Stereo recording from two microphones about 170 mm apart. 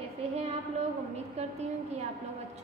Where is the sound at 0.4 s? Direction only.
40° right (ahead or behind).